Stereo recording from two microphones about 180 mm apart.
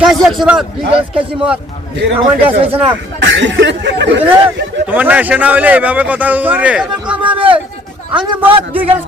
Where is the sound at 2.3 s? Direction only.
10° right (ahead or behind).